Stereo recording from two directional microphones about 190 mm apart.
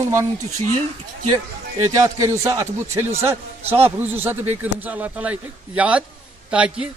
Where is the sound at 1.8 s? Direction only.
15° right (ahead or behind).